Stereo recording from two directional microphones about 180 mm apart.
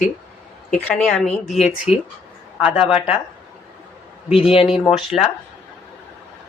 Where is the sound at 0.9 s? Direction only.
5° left (ahead or behind).